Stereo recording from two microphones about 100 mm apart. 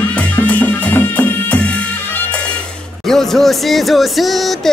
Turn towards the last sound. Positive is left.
turn(degrees=0)  # may be behind; listen again after turning